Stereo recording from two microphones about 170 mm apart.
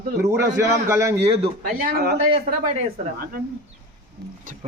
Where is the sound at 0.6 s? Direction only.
15° right (ahead or behind).